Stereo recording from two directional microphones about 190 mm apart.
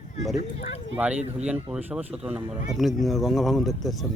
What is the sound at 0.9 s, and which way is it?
Speech, 10° right (ahead or behind).